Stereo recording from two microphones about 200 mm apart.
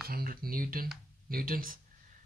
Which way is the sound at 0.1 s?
50° right (ahead or behind).